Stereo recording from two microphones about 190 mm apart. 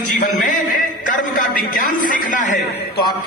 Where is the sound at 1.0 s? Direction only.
45° left (ahead or behind).